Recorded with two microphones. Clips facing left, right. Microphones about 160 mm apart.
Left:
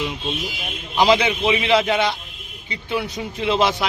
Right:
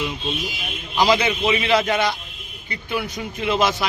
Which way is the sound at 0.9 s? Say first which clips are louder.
Left 2 dB; 20° left (ahead or behind).